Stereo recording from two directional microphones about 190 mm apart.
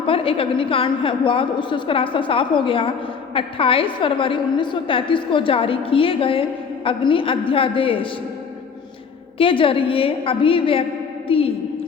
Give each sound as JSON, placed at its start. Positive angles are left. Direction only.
{"t": 0.1, "sound": "a woman's voice", "side_deg": 30}
{"t": 9.4, "sound": "a woman's voice", "side_deg": 30}